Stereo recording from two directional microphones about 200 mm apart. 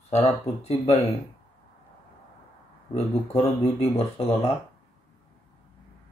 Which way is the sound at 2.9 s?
35° left (ahead or behind).